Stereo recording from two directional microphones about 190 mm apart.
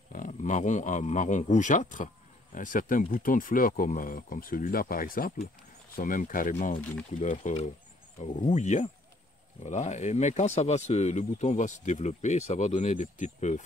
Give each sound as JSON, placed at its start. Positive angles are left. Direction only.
{"t": 0.1, "sound": "speech", "side_deg": 40}